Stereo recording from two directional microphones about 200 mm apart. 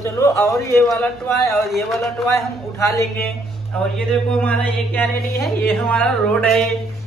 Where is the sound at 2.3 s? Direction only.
15° left (ahead or behind).